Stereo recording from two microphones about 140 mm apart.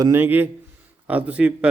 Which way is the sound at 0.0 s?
15° right (ahead or behind).